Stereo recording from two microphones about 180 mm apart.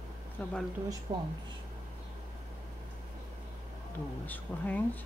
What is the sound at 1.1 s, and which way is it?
Speech, 25° right (ahead or behind).